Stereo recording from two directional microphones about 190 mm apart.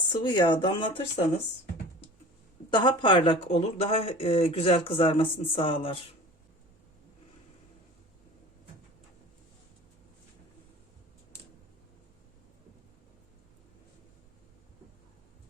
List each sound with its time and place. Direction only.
0.2 s speech: 25° left (ahead or behind)
2.6 s speech: 25° left (ahead or behind)